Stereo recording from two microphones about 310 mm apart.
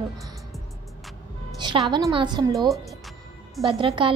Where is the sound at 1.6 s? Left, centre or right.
Centre.